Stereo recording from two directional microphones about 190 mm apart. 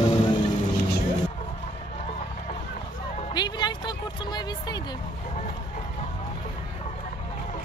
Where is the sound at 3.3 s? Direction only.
25° left (ahead or behind).